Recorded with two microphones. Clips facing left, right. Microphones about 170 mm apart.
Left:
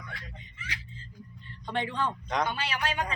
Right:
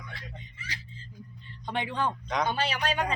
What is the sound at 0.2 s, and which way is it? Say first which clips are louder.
Speech: right 2 dB; 35° right (ahead or behind).